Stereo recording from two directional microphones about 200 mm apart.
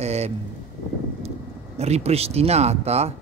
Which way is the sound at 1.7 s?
30° right (ahead or behind).